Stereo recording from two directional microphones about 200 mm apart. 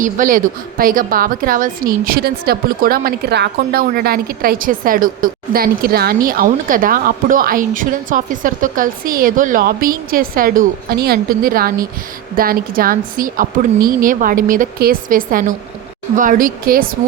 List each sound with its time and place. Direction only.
0.0 s a woman's voice: 40° right (ahead or behind)